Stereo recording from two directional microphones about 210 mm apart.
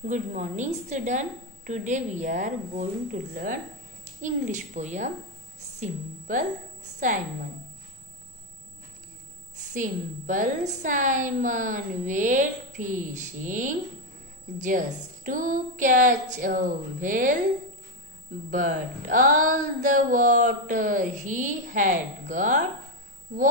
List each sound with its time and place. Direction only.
0.0 s a woman's voice: 35° right (ahead or behind)
9.8 s speech: 40° right (ahead or behind)
15.2 s speech: 40° right (ahead or behind)
18.5 s speech: 40° right (ahead or behind)